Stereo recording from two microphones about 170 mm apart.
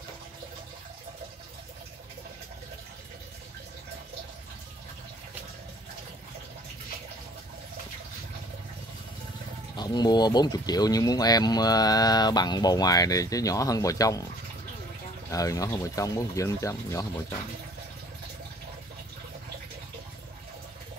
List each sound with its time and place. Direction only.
9.8 s speech: 25° left (ahead or behind)
15.3 s speech: 20° left (ahead or behind)